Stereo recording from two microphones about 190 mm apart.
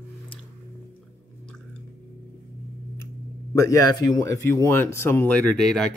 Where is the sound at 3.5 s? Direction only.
15° left (ahead or behind).